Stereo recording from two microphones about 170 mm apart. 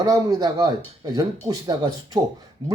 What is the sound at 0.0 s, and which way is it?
A man's voice, 20° right (ahead or behind).